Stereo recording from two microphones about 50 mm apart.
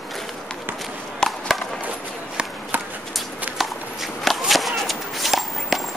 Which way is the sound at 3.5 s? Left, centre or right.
Centre.